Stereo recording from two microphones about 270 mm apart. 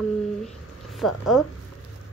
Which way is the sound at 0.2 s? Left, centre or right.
Centre.